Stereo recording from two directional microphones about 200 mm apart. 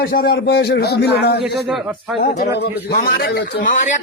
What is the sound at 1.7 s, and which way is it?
Speech, 5° right (ahead or behind).